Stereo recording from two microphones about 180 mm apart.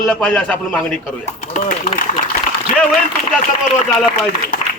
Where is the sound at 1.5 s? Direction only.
45° left (ahead or behind).